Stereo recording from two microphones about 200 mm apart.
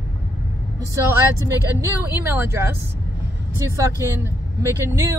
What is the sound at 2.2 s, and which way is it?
Speech, 10° right (ahead or behind).